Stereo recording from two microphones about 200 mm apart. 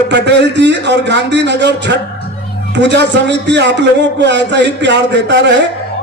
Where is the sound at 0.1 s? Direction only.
60° right (ahead or behind).